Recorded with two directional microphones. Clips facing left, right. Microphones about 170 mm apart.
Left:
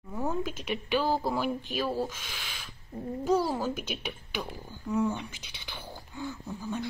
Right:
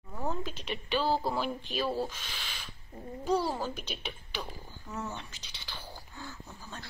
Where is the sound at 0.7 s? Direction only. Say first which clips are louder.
Left 1 dB; 10° left (ahead or behind).